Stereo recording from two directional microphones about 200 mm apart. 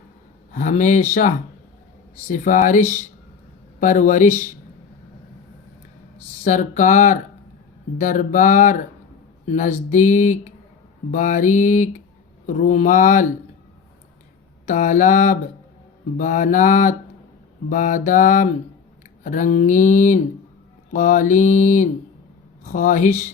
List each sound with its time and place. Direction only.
0.5 s mantra: 40° left (ahead or behind)
2.3 s mantra: 40° left (ahead or behind)
6.4 s mantra: 40° left (ahead or behind)
14.7 s mantra: 40° left (ahead or behind)